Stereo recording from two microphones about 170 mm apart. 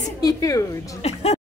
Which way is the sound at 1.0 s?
35° left (ahead or behind).